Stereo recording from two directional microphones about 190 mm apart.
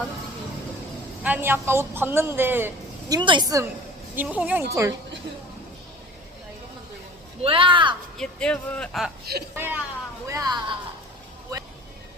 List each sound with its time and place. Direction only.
1.2 s a man's voice: 10° right (ahead or behind)
3.2 s speech: 25° right (ahead or behind)
4.1 s a man's voice: 10° right (ahead or behind)
7.4 s speech: 30° right (ahead or behind)
8.2 s speech: 5° left (ahead or behind)
9.6 s a man's voice: 10° right (ahead or behind)